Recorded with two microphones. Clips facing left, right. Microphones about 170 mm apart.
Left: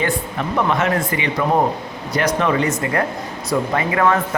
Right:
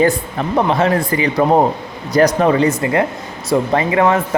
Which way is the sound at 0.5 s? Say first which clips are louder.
Right 4 dB; 30° right (ahead or behind).